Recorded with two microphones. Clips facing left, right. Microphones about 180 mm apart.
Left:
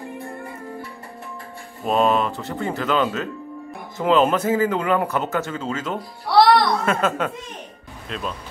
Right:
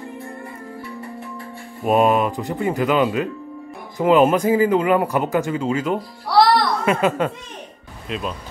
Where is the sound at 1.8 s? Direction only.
15° right (ahead or behind).